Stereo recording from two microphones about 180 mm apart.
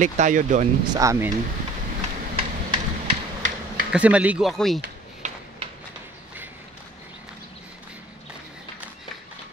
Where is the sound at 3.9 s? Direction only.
5° right (ahead or behind).